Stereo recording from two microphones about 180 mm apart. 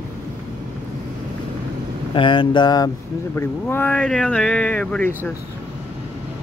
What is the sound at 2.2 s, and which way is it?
Speech, 25° left (ahead or behind).